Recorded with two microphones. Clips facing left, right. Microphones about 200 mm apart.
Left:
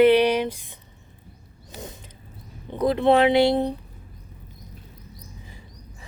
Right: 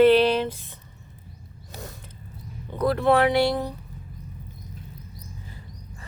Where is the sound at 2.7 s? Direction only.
20° left (ahead or behind).